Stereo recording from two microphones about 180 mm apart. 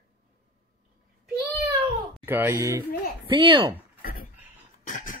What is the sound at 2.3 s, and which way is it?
Speech, 15° right (ahead or behind).